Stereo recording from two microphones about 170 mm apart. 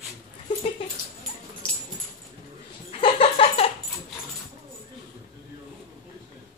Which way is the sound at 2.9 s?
35° left (ahead or behind).